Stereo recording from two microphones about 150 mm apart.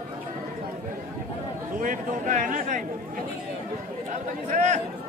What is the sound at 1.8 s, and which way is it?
Speech, 60° right (ahead or behind).